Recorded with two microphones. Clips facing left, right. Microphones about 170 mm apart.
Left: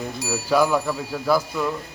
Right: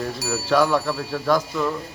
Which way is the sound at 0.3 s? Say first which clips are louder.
Even; 10° left (ahead or behind).